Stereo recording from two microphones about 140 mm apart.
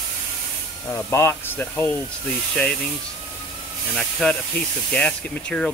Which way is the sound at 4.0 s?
5° left (ahead or behind).